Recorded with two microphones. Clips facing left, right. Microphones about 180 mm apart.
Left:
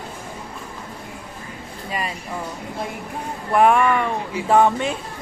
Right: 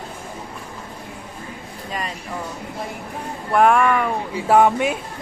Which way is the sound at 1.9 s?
10° left (ahead or behind).